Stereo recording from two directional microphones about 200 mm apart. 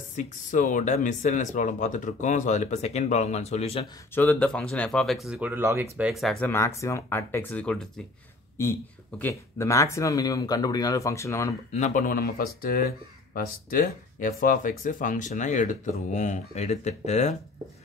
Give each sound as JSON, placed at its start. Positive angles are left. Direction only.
{"t": 0.1, "sound": "speech", "side_deg": 40}
{"t": 4.1, "sound": "speech", "side_deg": 10}
{"t": 6.5, "sound": "speech", "side_deg": 15}
{"t": 9.2, "sound": "speech", "side_deg": 15}
{"t": 11.7, "sound": "speech", "side_deg": 40}